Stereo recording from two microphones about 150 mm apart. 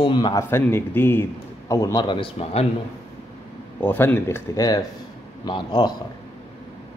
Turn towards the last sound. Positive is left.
turn(degrees=30)  # may be behind; listen again after turning